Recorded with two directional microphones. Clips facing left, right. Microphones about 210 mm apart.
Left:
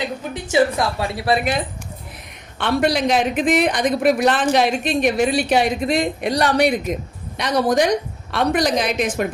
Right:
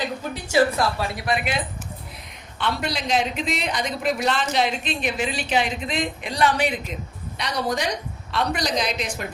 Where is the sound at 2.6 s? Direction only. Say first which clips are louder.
Left 8 dB; 55° left (ahead or behind).